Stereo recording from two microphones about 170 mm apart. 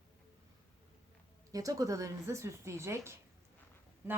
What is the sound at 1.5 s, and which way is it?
A woman's voice, 20° right (ahead or behind).